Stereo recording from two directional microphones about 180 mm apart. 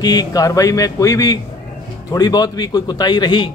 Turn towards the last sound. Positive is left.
turn(degrees=25)  # may be behind; listen again after turning